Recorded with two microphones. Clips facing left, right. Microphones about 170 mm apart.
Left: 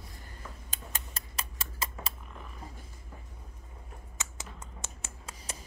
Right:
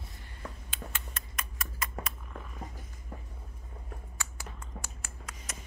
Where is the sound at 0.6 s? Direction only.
35° left (ahead or behind).